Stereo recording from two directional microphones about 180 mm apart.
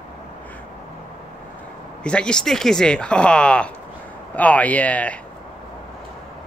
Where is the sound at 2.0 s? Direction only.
5° left (ahead or behind).